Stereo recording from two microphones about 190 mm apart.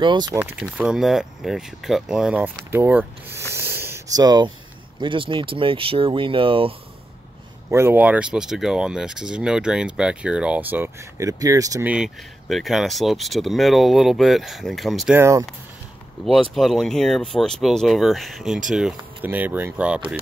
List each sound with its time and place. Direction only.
0.0 s speech: 25° right (ahead or behind)
0.4 s speech: 10° right (ahead or behind)
3.5 s a sound: 10° right (ahead or behind)
4.9 s speech: 25° right (ahead or behind)
7.7 s speech: 10° right (ahead or behind)
11.9 s speech: centre (ahead or behind)
15.1 s speech: 15° right (ahead or behind)
16.5 s speech: centre (ahead or behind)